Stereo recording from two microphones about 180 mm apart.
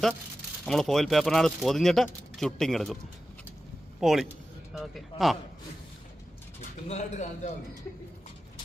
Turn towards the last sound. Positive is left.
turn(degrees=40)  # may be behind; listen again after turning